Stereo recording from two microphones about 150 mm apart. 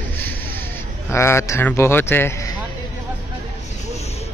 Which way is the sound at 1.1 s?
20° left (ahead or behind).